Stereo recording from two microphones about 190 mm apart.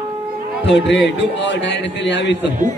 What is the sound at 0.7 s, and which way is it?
A man's voice, 70° left (ahead or behind).